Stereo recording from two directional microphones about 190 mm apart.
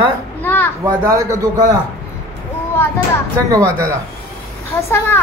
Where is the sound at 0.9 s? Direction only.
20° right (ahead or behind).